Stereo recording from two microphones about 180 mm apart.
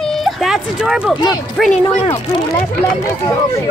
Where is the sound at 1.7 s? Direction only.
25° left (ahead or behind).